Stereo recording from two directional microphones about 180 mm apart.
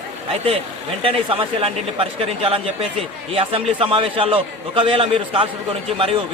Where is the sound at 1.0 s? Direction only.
30° right (ahead or behind).